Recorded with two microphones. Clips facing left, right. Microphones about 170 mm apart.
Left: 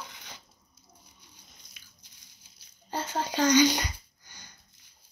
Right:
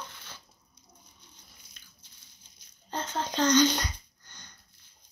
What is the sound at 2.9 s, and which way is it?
Speech, 10° left (ahead or behind).